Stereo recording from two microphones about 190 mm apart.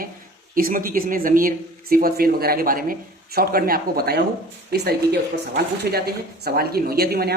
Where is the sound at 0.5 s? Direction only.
45° right (ahead or behind).